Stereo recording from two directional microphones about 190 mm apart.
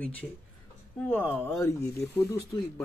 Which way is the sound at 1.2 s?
10° left (ahead or behind).